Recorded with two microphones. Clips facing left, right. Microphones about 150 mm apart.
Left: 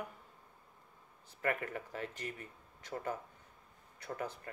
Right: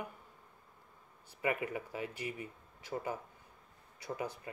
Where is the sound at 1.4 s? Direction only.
10° right (ahead or behind).